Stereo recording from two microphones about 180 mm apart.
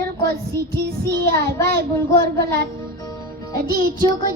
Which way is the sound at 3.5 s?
55° right (ahead or behind).